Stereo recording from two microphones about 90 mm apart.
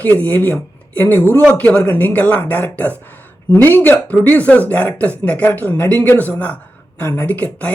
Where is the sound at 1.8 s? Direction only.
25° left (ahead or behind).